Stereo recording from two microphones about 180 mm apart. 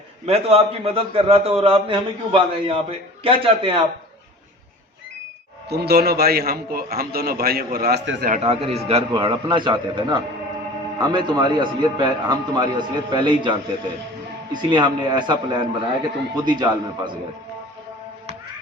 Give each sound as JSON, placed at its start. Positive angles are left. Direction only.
{"t": 0.3, "sound": "a man's voice", "side_deg": -35}
{"t": 5.6, "sound": "a man's voice", "side_deg": -65}
{"t": 8.4, "sound": "a man's voice", "side_deg": -35}